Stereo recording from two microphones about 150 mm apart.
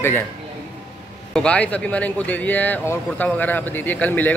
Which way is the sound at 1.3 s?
10° left (ahead or behind).